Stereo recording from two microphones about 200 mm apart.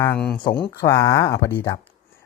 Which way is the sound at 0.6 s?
15° left (ahead or behind).